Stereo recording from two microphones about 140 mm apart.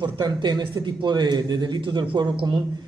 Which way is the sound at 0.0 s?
30° right (ahead or behind).